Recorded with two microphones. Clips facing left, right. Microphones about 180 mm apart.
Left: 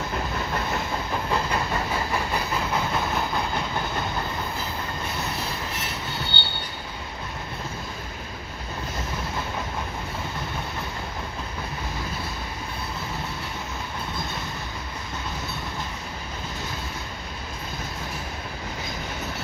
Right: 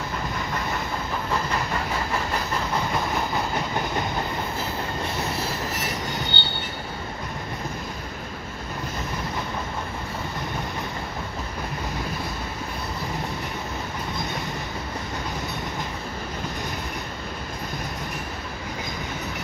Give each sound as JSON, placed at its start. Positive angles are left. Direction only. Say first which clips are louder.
{"t": 6.4, "sound": "train", "louder": "right 2 dB", "side_deg": -20}